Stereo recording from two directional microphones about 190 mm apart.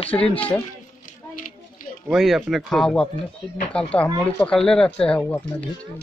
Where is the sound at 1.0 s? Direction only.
45° left (ahead or behind).